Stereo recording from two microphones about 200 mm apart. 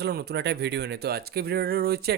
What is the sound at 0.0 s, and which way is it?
Speech, 55° right (ahead or behind).